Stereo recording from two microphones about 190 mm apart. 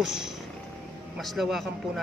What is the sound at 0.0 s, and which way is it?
Speech, 5° right (ahead or behind).